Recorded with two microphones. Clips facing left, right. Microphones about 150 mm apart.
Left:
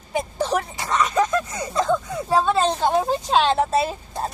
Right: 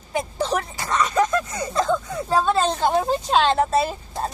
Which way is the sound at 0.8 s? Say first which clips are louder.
Right 1 dB; 5° left (ahead or behind).